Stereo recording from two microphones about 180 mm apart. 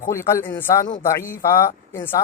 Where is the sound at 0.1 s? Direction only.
15° left (ahead or behind).